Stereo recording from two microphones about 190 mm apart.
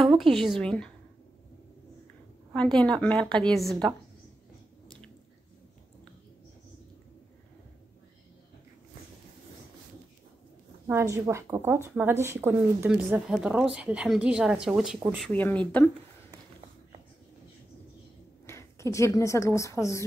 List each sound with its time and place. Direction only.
0.0 s a woman's voice: centre (ahead or behind)
2.5 s a woman's voice: 5° left (ahead or behind)
10.9 s speech: 15° right (ahead or behind); by 15.6 s 5° left (ahead or behind)
18.5 s speech: 15° left (ahead or behind)